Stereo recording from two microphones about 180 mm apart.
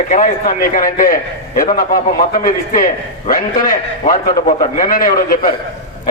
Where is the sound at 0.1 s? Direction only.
45° left (ahead or behind).